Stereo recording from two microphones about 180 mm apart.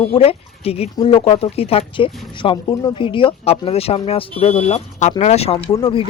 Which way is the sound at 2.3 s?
30° left (ahead or behind).